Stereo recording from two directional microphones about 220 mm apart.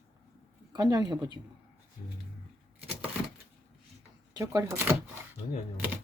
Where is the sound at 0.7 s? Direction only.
20° right (ahead or behind).